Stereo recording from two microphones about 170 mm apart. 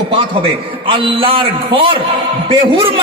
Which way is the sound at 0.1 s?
30° right (ahead or behind).